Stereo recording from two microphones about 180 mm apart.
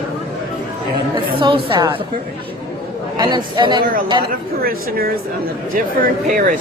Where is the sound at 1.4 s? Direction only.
25° right (ahead or behind).